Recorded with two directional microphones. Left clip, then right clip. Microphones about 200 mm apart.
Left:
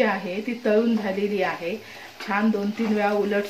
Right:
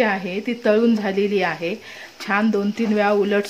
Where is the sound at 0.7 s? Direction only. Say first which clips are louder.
Right 4 dB; 55° right (ahead or behind).